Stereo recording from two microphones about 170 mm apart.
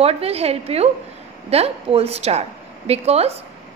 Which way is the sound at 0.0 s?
35° right (ahead or behind).